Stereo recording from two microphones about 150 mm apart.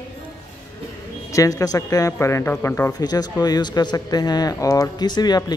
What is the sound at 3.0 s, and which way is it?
Speech, 25° left (ahead or behind).